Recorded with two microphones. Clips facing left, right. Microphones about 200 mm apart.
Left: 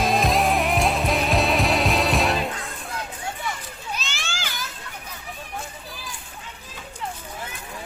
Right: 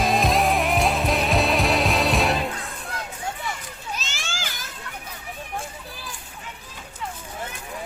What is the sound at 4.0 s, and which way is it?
Children playing, 45° right (ahead or behind).